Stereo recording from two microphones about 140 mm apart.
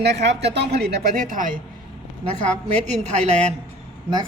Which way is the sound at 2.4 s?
55° right (ahead or behind).